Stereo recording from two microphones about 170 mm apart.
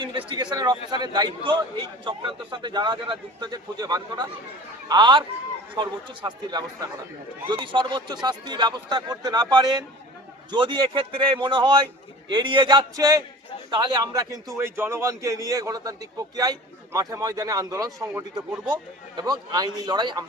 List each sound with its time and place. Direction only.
0.0 s a man's voice: 30° right (ahead or behind)